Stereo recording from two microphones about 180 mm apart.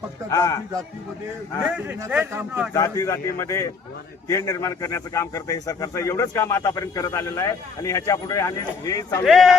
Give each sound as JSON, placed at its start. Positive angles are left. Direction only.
{"t": 0.3, "sound": "speech", "side_deg": 20}
{"t": 1.7, "sound": "a man's voice", "side_deg": -10}
{"t": 2.7, "sound": "a man's voice", "side_deg": 15}
{"t": 9.2, "sound": "speech", "side_deg": 0}